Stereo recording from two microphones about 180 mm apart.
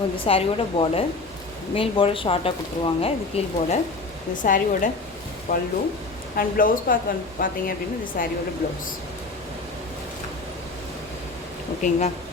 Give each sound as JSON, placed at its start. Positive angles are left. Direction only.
{"t": 0.3, "sound": "a woman's voice", "side_deg": 30}
{"t": 4.4, "sound": "a woman's voice", "side_deg": 50}
{"t": 11.8, "sound": "a woman's voice", "side_deg": 40}